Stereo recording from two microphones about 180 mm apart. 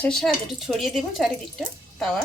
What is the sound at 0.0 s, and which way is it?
A woman's voice, 5° left (ahead or behind).